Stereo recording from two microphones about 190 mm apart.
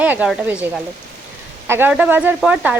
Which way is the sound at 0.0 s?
10° right (ahead or behind).